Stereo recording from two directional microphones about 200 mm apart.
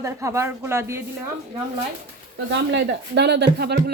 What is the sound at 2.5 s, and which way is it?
Speech, 60° right (ahead or behind).